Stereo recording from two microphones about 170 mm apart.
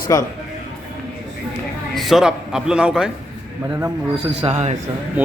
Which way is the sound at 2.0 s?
Centre (ahead or behind).